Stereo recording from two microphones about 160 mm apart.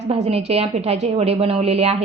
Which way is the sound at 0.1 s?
40° right (ahead or behind).